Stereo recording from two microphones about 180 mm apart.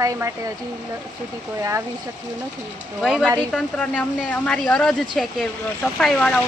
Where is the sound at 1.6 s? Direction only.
15° right (ahead or behind).